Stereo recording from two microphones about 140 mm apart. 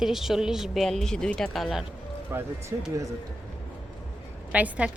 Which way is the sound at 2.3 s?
15° right (ahead or behind).